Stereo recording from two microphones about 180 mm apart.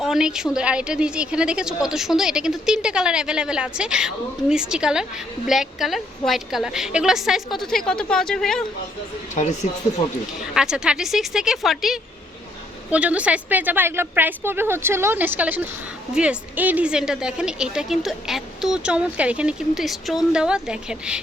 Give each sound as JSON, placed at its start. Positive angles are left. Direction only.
{"t": 0.0, "sound": "a woman's voice", "side_deg": -5}
{"t": 9.3, "sound": "speech", "side_deg": 40}
{"t": 10.5, "sound": "a woman's voice", "side_deg": -5}